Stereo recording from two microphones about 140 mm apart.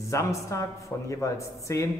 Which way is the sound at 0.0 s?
20° left (ahead or behind).